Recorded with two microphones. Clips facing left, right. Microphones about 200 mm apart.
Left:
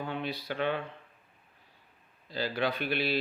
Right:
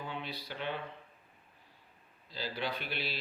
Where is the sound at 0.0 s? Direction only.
55° left (ahead or behind).